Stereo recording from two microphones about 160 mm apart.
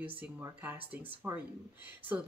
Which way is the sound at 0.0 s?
10° right (ahead or behind).